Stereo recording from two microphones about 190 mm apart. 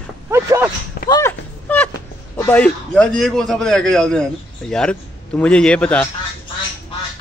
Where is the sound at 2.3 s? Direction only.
10° left (ahead or behind).